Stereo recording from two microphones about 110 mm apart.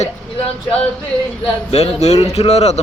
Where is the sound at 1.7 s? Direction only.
80° left.